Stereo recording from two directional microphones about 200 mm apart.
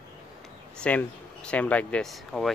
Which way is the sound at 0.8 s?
5° left (ahead or behind).